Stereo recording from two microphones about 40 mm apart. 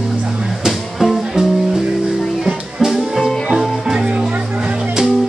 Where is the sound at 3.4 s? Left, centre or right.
Centre.